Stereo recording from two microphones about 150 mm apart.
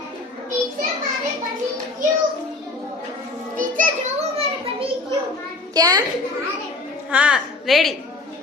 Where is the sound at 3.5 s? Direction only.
55° right (ahead or behind).